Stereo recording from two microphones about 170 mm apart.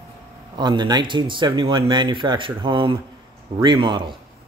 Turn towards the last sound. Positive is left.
turn(degrees=-30)  # may be behind; listen again after turning